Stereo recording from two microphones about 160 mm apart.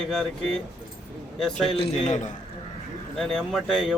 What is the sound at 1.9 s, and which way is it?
Speech, 45° left (ahead or behind).